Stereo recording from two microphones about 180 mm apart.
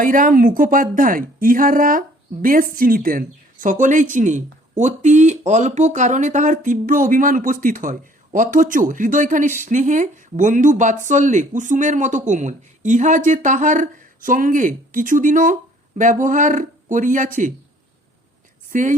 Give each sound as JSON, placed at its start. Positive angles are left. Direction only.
{"t": 0.0, "sound": "speech", "side_deg": -50}
{"t": 18.7, "sound": "speech", "side_deg": -45}